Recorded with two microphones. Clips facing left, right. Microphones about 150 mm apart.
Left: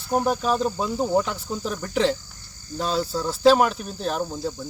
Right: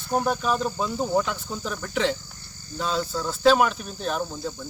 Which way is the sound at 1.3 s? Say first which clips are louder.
Left 2 dB; 35° left (ahead or behind).